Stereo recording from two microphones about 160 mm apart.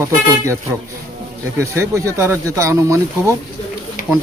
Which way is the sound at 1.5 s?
15° right (ahead or behind).